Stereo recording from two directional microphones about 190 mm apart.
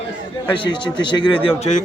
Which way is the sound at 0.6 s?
25° left (ahead or behind).